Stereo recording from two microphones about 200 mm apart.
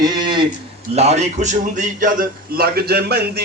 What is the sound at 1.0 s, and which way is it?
A man's voice, 35° right (ahead or behind).